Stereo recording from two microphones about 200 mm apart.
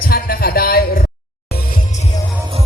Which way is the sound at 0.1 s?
45° left (ahead or behind).